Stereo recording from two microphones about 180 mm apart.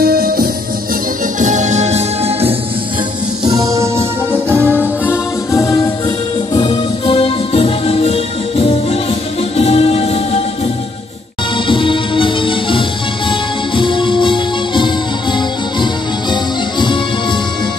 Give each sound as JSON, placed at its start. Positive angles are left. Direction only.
{"t": 0.0, "sound": "music", "side_deg": -55}
{"t": 1.4, "sound": "music", "side_deg": -45}
{"t": 3.4, "sound": "music", "side_deg": -20}
{"t": 4.7, "sound": "music", "side_deg": 10}
{"t": 6.5, "sound": "music", "side_deg": 30}
{"t": 11.5, "sound": "music", "side_deg": 25}